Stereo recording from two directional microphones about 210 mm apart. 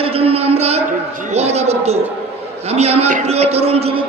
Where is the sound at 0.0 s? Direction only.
30° right (ahead or behind).